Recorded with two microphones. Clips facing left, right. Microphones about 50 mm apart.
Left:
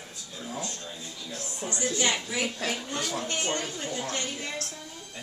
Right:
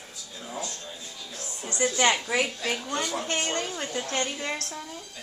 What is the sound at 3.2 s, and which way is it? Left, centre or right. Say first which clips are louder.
A woman's voice: right 2 dB; right.